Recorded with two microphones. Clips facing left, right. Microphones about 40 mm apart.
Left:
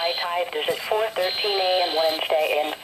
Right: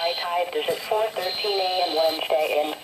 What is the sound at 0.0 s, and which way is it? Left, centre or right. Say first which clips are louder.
Speech: even; centre.